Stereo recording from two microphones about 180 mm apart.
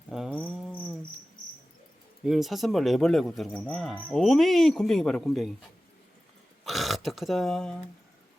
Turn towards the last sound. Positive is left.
turn(degrees=5)  # may be behind; listen again after turning